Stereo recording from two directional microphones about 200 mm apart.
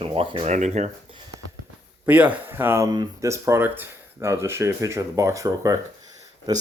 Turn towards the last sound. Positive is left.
turn(degrees=-20)  # may be behind; listen again after turning